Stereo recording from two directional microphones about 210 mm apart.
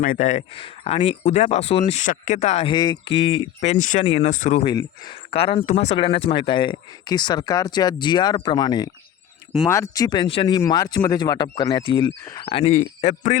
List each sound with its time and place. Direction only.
0.0 s speech: 35° left (ahead or behind)
4.6 s speech: 20° left (ahead or behind)